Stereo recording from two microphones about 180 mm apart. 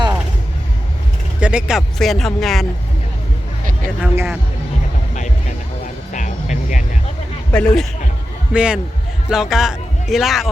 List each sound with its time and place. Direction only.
1.4 s speech: 5° right (ahead or behind)
4.0 s speech: 10° right (ahead or behind)
5.1 s music: 40° left (ahead or behind)
7.5 s a man's voice: 5° left (ahead or behind)
8.5 s speech: 5° right (ahead or behind)